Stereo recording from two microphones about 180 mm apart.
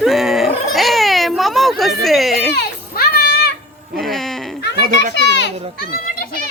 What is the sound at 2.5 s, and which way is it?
Children playing, 60° left (ahead or behind).